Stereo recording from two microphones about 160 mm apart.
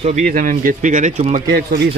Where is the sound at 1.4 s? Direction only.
85° right.